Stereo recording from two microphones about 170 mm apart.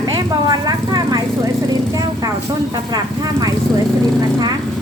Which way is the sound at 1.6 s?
20° right (ahead or behind).